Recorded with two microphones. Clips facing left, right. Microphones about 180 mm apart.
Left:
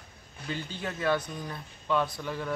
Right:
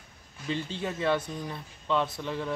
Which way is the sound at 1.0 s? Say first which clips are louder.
Even; 25° right (ahead or behind).